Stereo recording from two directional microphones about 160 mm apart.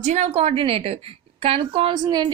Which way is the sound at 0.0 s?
45° right (ahead or behind).